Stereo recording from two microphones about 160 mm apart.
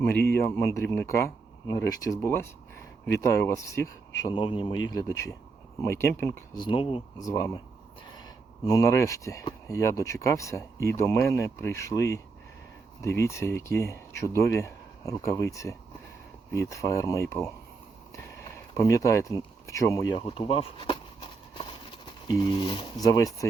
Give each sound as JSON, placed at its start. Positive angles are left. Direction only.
{"t": 0.1, "sound": "speech", "side_deg": 15}
{"t": 4.4, "sound": "speech", "side_deg": 35}
{"t": 5.0, "sound": "speech", "side_deg": 20}
{"t": 7.2, "sound": "speech", "side_deg": 20}
{"t": 8.6, "sound": "speech", "side_deg": 20}
{"t": 18.1, "sound": "a sound", "side_deg": 20}
{"t": 22.4, "sound": "speech", "side_deg": 30}